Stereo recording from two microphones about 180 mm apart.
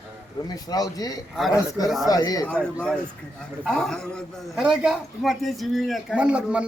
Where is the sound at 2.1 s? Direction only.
20° left (ahead or behind).